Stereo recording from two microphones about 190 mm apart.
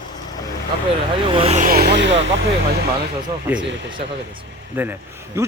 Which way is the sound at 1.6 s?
55° right (ahead or behind).